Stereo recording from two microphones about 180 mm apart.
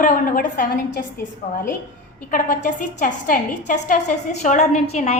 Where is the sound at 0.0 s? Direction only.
45° left (ahead or behind).